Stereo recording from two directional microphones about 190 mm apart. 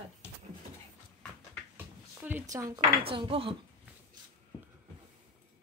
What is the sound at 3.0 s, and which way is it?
Speech, 30° right (ahead or behind).